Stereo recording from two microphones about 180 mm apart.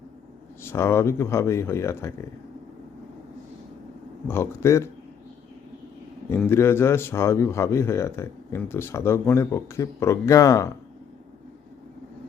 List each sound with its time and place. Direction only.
0.6 s a man's voice: 15° left (ahead or behind)
4.3 s a man's voice: 15° left (ahead or behind)
6.2 s a man's voice: 15° left (ahead or behind)